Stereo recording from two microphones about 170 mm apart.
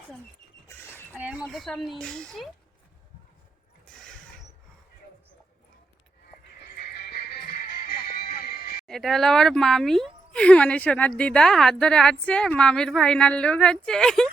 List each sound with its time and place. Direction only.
1.1 s speech: 5° right (ahead or behind)
6.2 s music: 70° left (ahead or behind)
8.9 s speech: centre (ahead or behind)